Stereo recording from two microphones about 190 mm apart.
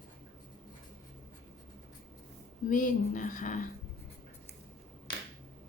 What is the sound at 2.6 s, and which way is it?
Speech, 45° left (ahead or behind).